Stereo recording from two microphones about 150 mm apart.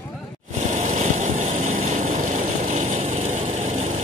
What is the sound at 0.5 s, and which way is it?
Vehicle, 50° right (ahead or behind).